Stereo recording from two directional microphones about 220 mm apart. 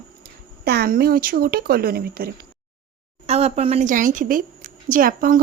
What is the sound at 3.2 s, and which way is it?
A woman's voice, 30° right (ahead or behind).